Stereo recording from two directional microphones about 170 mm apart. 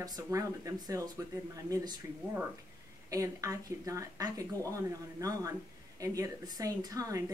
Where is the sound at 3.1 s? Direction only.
20° right (ahead or behind).